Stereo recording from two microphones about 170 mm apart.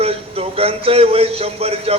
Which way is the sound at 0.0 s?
35° right (ahead or behind).